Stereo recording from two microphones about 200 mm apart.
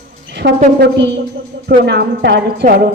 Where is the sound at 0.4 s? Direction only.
50° right (ahead or behind).